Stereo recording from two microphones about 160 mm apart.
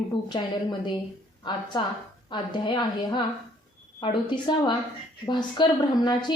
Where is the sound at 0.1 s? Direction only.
30° left (ahead or behind).